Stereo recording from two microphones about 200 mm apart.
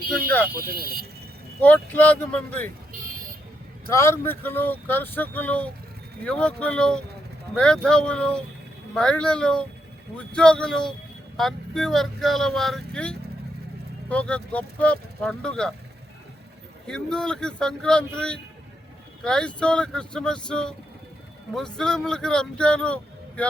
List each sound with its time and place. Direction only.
0.5 s speech: 50° right (ahead or behind)
1.6 s speech: 10° left (ahead or behind)
3.8 s speech: 15° left (ahead or behind)
16.8 s speech: 5° left (ahead or behind)